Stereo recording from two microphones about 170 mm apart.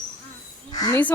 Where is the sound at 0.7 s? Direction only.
25° left (ahead or behind).